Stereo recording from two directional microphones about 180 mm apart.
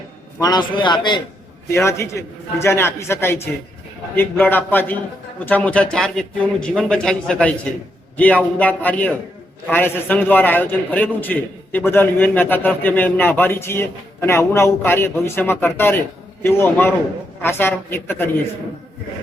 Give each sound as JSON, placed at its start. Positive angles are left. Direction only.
{"t": 0.3, "sound": "a man's voice", "side_deg": 20}